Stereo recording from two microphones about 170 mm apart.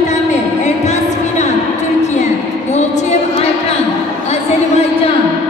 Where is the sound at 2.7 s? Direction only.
40° left (ahead or behind).